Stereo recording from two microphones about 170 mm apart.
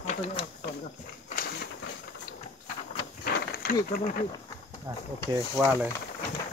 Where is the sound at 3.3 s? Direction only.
60° left (ahead or behind).